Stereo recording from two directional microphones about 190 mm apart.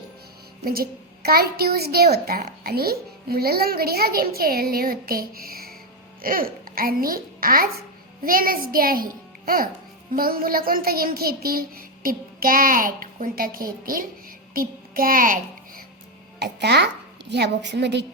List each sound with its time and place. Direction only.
0.6 s a woman's voice: 50° right (ahead or behind)
10.1 s a woman's voice: 50° right (ahead or behind)
16.4 s a child's voice: 60° right (ahead or behind)